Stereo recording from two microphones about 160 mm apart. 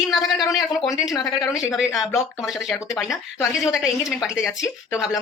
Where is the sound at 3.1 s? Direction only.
20° left (ahead or behind).